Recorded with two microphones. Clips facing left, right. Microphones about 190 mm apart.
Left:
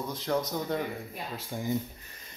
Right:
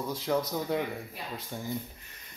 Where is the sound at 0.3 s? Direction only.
5° right (ahead or behind).